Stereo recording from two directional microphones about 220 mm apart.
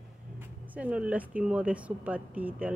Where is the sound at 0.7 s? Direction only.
5° right (ahead or behind).